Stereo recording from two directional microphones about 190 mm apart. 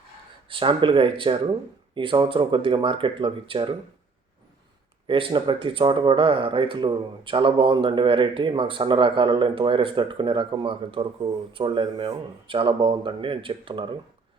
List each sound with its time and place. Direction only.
0.4 s speech: 25° right (ahead or behind)
5.0 s speech: 25° right (ahead or behind)